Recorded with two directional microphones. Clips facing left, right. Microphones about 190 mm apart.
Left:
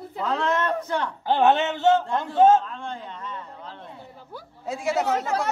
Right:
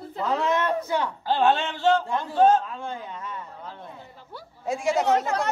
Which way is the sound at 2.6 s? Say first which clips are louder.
Right 1 dB; 10° right (ahead or behind).